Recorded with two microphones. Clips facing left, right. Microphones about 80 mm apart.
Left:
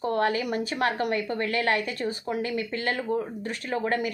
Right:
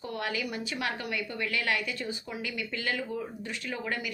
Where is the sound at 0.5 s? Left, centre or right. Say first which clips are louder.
Left 7 dB; left.